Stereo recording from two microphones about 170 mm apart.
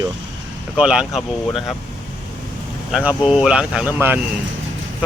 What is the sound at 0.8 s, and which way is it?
Speech, 5° right (ahead or behind).